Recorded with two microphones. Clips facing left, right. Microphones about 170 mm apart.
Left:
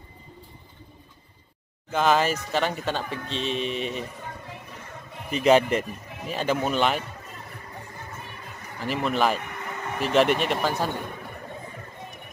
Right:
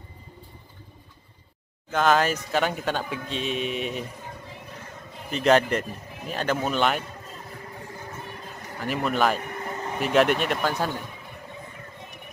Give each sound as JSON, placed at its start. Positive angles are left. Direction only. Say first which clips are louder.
{"t": 1.9, "sound": "speech", "louder": "even", "side_deg": 0}
{"t": 5.3, "sound": "speech", "louder": "left 1 dB", "side_deg": 5}
{"t": 8.7, "sound": "speech", "louder": "even", "side_deg": 0}
{"t": 9.4, "sound": "vehicle", "louder": "right 2 dB", "side_deg": -40}
{"t": 9.9, "sound": "speech", "louder": "even", "side_deg": 0}